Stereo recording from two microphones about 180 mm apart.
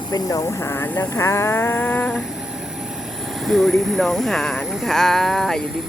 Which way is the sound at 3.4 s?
Centre (ahead or behind).